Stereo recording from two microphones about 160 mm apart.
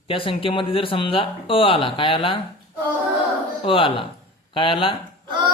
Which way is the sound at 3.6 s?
35° left (ahead or behind).